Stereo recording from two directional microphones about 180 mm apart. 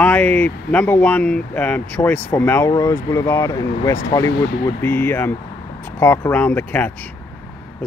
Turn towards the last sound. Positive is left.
turn(degrees=10)  # may be behind; listen again after turning